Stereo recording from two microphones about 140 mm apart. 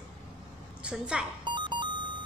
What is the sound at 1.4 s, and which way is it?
Music, 35° right (ahead or behind).